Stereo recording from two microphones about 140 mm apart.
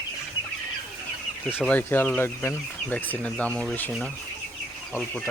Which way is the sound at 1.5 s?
10° left (ahead or behind).